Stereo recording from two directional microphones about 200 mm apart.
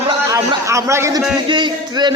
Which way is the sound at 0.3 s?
15° right (ahead or behind).